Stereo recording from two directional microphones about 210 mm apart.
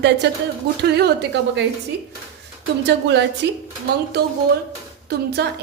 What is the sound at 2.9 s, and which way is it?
Speech, 55° right (ahead or behind).